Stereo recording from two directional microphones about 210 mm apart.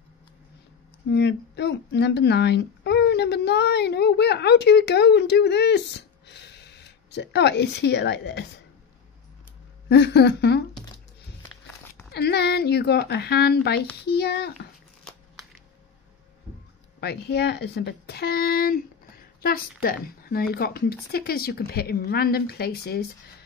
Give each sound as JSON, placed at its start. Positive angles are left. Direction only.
{"t": 1.1, "sound": "a woman's voice", "side_deg": 55}
{"t": 9.8, "sound": "a woman's voice", "side_deg": 55}
{"t": 12.1, "sound": "a woman's voice", "side_deg": 50}
{"t": 17.0, "sound": "a woman's voice", "side_deg": 50}
{"t": 19.8, "sound": "a woman's voice", "side_deg": 45}